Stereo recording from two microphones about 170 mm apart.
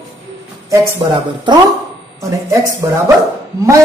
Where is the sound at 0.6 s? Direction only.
20° right (ahead or behind).